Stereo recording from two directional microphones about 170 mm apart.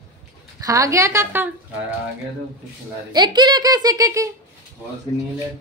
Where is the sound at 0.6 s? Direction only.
20° right (ahead or behind).